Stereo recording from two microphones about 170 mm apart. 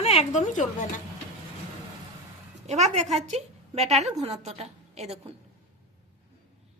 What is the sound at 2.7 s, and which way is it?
A woman's voice, 40° right (ahead or behind).